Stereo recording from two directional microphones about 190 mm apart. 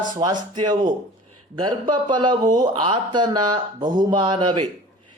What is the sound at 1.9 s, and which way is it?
Speech, 25° right (ahead or behind).